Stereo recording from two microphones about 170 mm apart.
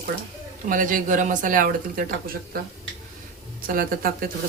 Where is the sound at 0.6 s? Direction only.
55° right (ahead or behind).